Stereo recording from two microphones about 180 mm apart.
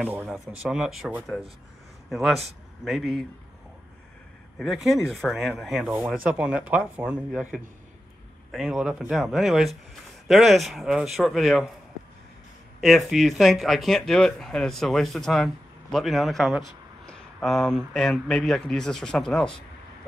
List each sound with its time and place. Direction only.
0.0 s speech: 10° right (ahead or behind)
4.6 s speech: centre (ahead or behind)
12.8 s speech: centre (ahead or behind)